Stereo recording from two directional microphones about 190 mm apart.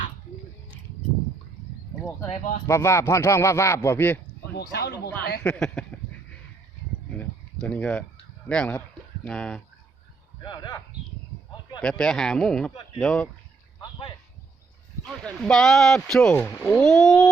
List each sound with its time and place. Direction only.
2.3 s speech: 40° left (ahead or behind)
2.6 s speech: 15° left (ahead or behind)
4.7 s speech: 60° left (ahead or behind)
5.4 s speech: 5° left (ahead or behind)
7.1 s a sound: 5° left (ahead or behind)
8.4 s speech: 5° left (ahead or behind)
10.4 s speech: 20° left (ahead or behind)
11.8 s speech: 5° left (ahead or behind)
15.0 s speech: 5° left (ahead or behind)